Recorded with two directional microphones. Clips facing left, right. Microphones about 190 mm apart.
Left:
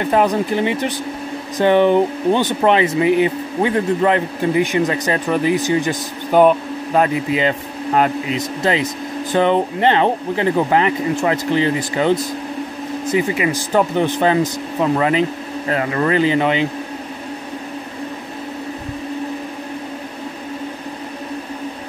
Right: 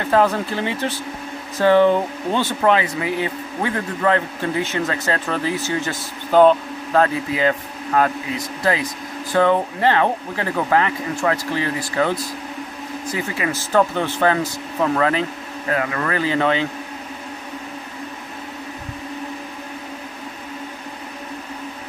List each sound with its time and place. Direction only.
0.0 s speech: 15° left (ahead or behind)
15.7 s speech: 25° left (ahead or behind)